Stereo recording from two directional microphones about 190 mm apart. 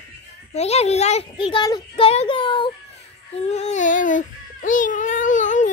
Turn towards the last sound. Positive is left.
turn(degrees=40)  # may be behind; listen again after turning